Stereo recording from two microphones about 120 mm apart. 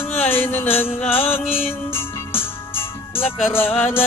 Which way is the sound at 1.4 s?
55° left (ahead or behind).